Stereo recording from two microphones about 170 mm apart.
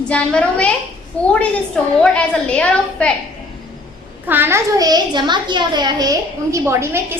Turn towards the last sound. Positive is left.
turn(degrees=-15)  # may be behind; listen again after turning